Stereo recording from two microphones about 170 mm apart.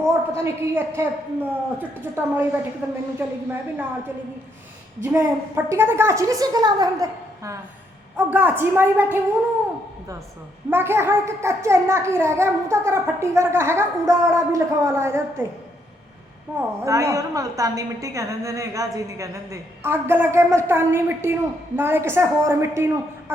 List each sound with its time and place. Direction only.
0.0 s a child's voice: 15° right (ahead or behind)
5.0 s a child's voice: 15° right (ahead or behind)
8.1 s a child's voice: 10° right (ahead or behind)
10.7 s a child's voice: 15° right (ahead or behind)
16.6 s a child's voice: 15° right (ahead or behind)